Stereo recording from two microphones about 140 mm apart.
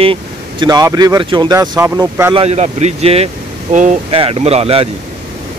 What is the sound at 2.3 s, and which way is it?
Speech, 50° right (ahead or behind).